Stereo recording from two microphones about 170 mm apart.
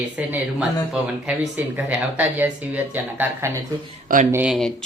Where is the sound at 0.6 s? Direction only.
5° right (ahead or behind).